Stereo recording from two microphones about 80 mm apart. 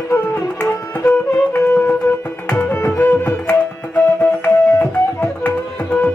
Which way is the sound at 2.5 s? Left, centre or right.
Left.